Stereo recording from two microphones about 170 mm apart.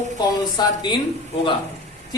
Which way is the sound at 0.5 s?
25° left (ahead or behind).